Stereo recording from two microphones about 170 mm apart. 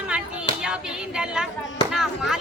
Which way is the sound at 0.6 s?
5° right (ahead or behind).